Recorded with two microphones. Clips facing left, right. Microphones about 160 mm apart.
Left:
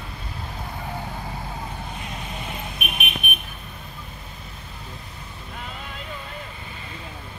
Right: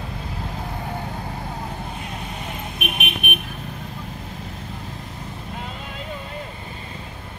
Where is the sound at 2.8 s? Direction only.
70° right (ahead or behind).